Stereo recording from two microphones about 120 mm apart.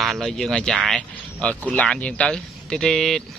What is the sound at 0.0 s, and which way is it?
Speech, centre (ahead or behind).